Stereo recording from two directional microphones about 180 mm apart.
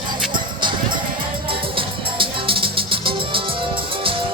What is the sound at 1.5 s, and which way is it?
Music, 30° right (ahead or behind).